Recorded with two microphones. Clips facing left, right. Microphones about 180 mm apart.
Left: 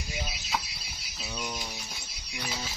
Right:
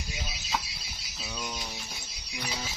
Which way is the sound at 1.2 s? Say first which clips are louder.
Left 1 dB; 5° left (ahead or behind).